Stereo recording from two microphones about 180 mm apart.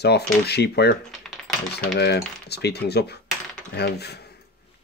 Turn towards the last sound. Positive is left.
turn(degrees=65)  # may be behind; listen again after turning